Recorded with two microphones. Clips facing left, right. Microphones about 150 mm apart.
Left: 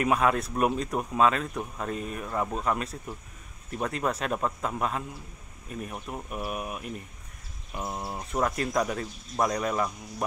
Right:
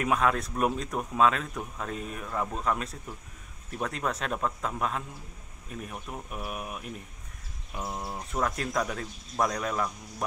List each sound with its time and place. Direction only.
0.0 s speech: 5° left (ahead or behind)